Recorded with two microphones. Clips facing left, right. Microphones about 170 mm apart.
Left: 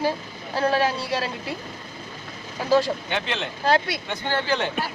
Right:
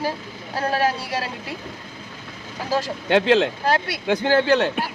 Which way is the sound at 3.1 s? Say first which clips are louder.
Right 11 dB; 90° right.